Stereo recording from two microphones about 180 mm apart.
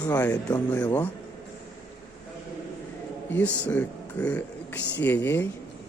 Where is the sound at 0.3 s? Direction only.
20° left (ahead or behind).